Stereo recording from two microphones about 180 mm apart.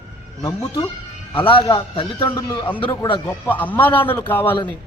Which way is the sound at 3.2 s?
10° left (ahead or behind).